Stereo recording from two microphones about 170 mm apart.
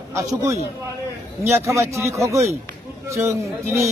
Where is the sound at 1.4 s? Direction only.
15° right (ahead or behind).